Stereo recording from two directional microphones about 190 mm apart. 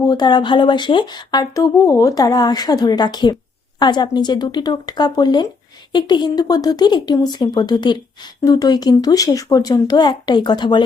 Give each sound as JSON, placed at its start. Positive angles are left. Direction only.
{"t": 0.1, "sound": "speech", "side_deg": 25}